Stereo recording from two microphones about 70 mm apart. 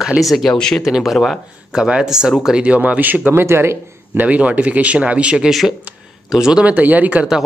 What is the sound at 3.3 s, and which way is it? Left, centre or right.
Speech, right.